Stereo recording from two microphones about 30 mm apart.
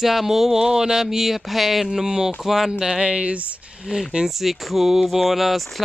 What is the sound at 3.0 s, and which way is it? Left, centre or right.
Speech, right.